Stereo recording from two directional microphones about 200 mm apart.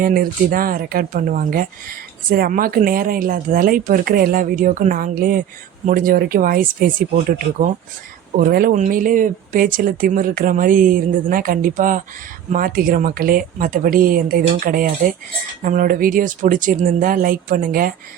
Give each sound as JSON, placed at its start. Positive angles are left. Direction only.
{"t": 0.0, "sound": "speech", "side_deg": -45}